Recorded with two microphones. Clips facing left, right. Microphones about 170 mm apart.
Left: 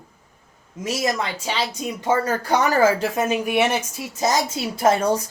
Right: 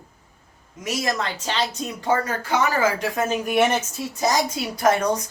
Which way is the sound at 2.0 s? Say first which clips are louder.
Left 2 dB; 25° left (ahead or behind).